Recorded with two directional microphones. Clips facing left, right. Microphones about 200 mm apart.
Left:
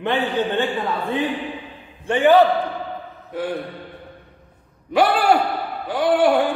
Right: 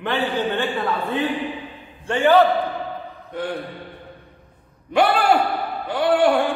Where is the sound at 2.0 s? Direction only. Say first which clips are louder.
Left 1 dB; 15° left (ahead or behind).